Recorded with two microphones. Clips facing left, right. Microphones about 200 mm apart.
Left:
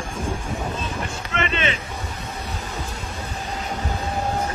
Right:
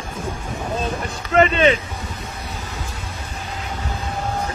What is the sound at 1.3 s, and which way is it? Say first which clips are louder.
Boat: right 10 dB; 40° right (ahead or behind).